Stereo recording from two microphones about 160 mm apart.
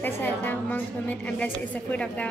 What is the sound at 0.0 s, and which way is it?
A woman's voice, 10° left (ahead or behind).